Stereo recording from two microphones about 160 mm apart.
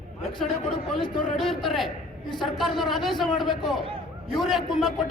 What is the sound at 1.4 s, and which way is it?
A man's voice, centre (ahead or behind).